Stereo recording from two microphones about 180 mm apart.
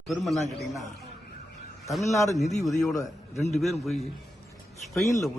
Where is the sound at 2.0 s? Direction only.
15° left (ahead or behind).